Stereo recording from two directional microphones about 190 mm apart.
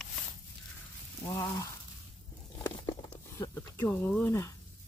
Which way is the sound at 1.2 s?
20° left (ahead or behind).